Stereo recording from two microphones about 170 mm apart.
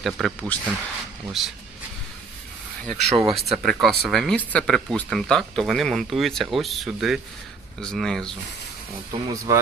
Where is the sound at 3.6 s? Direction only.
Centre (ahead or behind).